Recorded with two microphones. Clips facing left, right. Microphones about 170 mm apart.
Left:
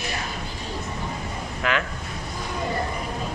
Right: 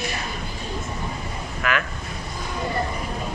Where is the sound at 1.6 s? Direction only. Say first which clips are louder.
Even; 25° left (ahead or behind).